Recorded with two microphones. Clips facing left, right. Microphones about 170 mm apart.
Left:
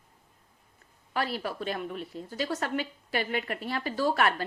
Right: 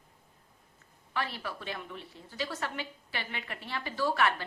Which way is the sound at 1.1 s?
40° left (ahead or behind).